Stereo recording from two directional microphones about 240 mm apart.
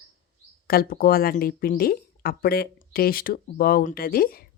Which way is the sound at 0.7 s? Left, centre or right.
Left.